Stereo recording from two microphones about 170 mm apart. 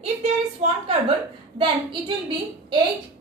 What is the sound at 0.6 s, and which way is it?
Speech, 35° right (ahead or behind).